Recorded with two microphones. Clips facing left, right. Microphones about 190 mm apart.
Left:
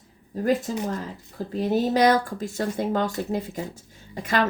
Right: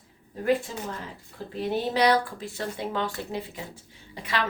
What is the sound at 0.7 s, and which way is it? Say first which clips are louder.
Speech: left 7 dB; 40° left (ahead or behind).